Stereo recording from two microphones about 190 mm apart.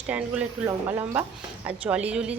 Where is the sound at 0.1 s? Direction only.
5° right (ahead or behind).